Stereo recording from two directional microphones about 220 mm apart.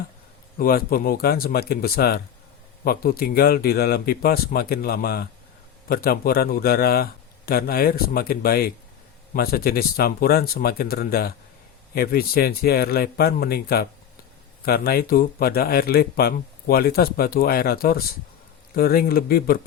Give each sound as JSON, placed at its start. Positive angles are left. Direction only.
{"t": 0.6, "sound": "speech", "side_deg": 40}